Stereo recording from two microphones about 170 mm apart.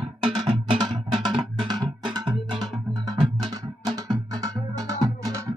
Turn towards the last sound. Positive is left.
turn(degrees=-20)  # may be behind; listen again after turning